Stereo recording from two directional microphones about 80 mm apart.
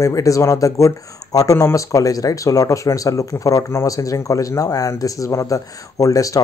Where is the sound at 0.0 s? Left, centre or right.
Left.